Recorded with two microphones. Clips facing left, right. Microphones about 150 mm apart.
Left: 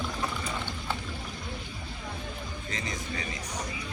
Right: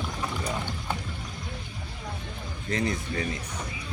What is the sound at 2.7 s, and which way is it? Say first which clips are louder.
Speech: right 9 dB; 60° right (ahead or behind).